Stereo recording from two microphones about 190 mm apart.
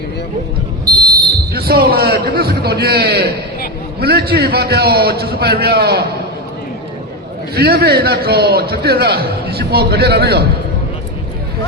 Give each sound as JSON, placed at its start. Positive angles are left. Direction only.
{"t": 1.1, "sound": "a man's voice", "side_deg": -55}
{"t": 7.5, "sound": "a man's voice", "side_deg": -55}